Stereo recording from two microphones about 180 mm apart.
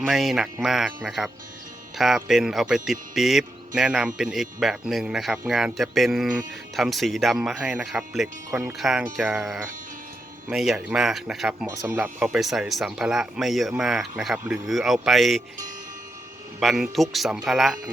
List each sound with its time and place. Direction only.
0.0 s speech: centre (ahead or behind)
8.4 s speech: 15° right (ahead or behind)
8.8 s speech: centre (ahead or behind)
11.7 s speech: 20° right (ahead or behind)
11.9 s speech: 5° right (ahead or behind)
16.6 s speech: centre (ahead or behind)